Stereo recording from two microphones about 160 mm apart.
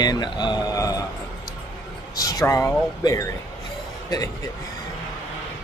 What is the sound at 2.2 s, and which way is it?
A man's voice, 20° left (ahead or behind).